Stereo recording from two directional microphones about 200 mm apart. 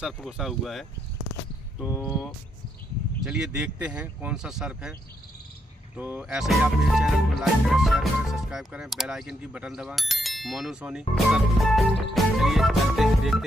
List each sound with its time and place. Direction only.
0.0 s speech: centre (ahead or behind)
2.0 s speech: centre (ahead or behind)
5.9 s speech: 5° right (ahead or behind)